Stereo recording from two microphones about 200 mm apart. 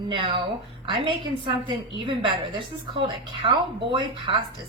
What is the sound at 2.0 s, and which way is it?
Speech, 25° right (ahead or behind).